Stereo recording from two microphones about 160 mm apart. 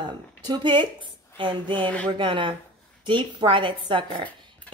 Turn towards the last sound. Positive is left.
turn(degrees=-30)  # may be behind; listen again after turning